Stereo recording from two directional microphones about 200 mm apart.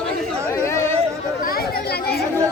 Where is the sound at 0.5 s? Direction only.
15° left (ahead or behind).